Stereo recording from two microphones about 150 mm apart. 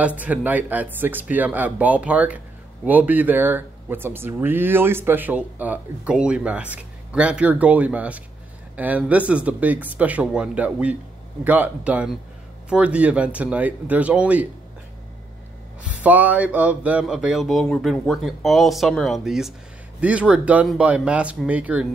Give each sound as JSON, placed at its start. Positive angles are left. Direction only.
{"t": 0.0, "sound": "speech", "side_deg": -10}
{"t": 15.8, "sound": "a sound", "side_deg": -10}
{"t": 20.0, "sound": "speech", "side_deg": -10}